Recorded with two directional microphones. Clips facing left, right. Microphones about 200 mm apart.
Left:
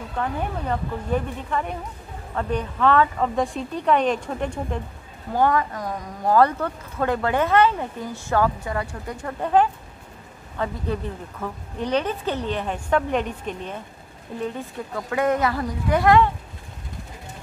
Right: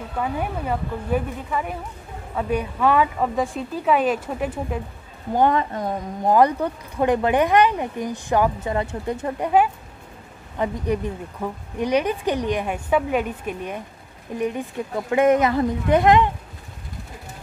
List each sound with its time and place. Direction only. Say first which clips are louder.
0.2 s a woman's voice: right 1 dB; 10° right (ahead or behind)
5.3 s speech: right 2 dB; 20° right (ahead or behind)
10.6 s a woman's voice: right 3 dB; 15° right (ahead or behind)